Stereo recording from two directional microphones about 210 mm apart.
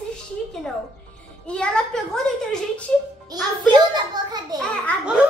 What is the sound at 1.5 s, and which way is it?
A woman's voice, 5° left (ahead or behind).